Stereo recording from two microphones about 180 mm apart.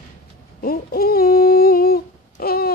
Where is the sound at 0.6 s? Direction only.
55° left (ahead or behind).